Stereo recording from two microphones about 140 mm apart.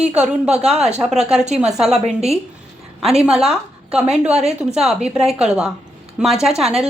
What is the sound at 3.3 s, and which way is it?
A woman's voice, centre (ahead or behind).